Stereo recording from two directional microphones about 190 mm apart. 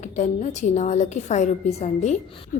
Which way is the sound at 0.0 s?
40° left (ahead or behind).